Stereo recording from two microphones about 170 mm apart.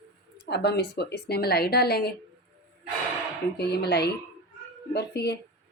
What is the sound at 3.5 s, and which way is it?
Speech, 75° left (ahead or behind).